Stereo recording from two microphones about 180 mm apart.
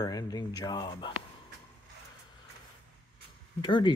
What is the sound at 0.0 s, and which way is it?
Speech, 20° left (ahead or behind).